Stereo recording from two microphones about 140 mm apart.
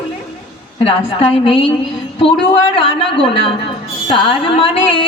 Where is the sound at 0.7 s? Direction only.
45° left (ahead or behind).